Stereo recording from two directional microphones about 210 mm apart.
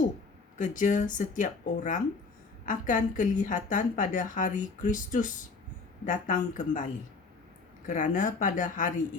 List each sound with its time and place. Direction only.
0.6 s a woman's voice: 40° left (ahead or behind)